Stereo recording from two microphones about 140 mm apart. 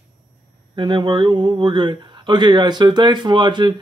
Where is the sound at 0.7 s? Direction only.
35° right (ahead or behind).